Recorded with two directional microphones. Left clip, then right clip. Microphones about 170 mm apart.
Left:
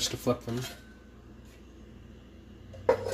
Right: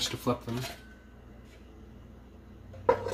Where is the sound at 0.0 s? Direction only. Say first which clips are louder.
Left 1 dB; centre (ahead or behind).